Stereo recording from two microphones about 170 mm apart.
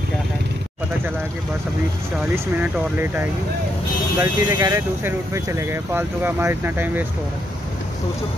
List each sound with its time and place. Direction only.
4.2 s speech: 20° right (ahead or behind)